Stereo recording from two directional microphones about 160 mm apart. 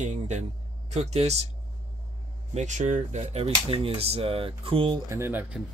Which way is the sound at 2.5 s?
50° right (ahead or behind).